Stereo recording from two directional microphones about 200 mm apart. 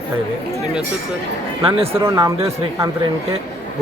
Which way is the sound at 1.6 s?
30° right (ahead or behind).